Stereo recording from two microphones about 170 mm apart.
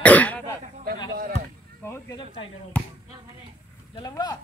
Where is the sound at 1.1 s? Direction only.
60° right (ahead or behind).